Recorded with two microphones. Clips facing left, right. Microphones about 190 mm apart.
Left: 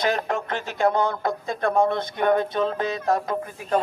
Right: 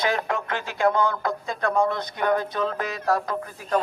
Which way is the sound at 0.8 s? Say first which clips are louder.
Even; 25° left (ahead or behind).